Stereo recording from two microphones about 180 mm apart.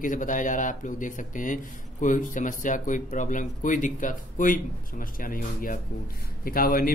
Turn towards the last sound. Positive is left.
turn(degrees=50)  # may be behind; listen again after turning